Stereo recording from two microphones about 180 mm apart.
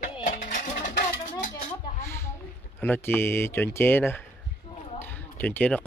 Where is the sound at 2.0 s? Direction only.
15° left (ahead or behind).